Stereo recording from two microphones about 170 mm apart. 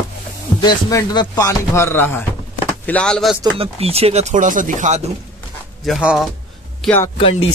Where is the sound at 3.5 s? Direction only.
35° right (ahead or behind).